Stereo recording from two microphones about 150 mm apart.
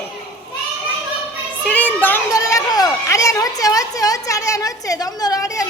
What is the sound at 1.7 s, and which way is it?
A child's voice, 10° left (ahead or behind).